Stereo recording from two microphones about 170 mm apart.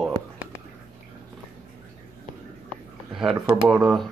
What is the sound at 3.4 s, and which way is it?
Speech, 5° right (ahead or behind).